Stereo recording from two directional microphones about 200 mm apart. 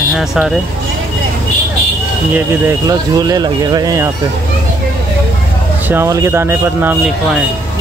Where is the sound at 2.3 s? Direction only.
15° right (ahead or behind).